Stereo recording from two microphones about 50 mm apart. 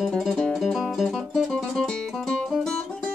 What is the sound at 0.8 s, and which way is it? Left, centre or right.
Music, centre.